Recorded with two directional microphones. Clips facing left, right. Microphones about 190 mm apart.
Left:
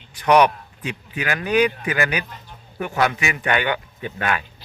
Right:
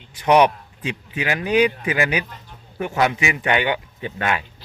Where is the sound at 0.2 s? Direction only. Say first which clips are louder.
Even; 25° right (ahead or behind).